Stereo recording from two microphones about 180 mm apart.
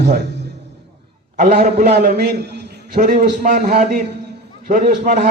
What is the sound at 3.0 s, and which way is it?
A man's voice, 45° right (ahead or behind).